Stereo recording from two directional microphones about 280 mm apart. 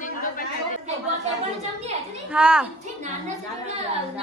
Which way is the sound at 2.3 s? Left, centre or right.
Centre.